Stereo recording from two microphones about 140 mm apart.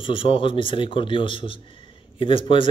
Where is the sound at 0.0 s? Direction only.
40° left (ahead or behind).